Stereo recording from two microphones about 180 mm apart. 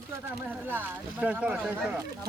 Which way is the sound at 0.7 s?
10° right (ahead or behind).